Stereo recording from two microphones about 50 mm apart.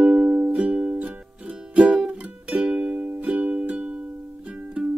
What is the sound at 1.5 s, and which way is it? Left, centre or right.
Music, centre.